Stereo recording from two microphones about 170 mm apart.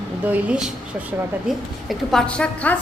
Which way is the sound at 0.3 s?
5° right (ahead or behind).